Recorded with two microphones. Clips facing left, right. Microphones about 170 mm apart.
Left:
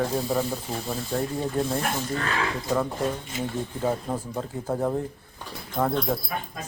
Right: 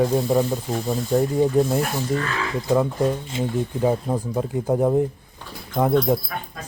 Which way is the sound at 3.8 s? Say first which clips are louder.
Right 5 dB; 15° right (ahead or behind).